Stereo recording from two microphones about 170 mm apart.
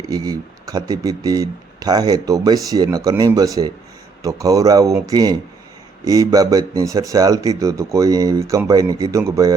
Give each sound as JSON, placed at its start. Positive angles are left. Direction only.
{"t": 0.1, "sound": "speech", "side_deg": -20}